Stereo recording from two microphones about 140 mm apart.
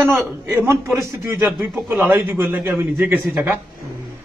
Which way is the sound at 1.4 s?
Centre (ahead or behind).